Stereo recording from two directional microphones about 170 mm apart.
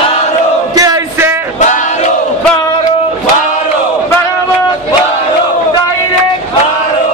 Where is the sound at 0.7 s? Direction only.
20° right (ahead or behind).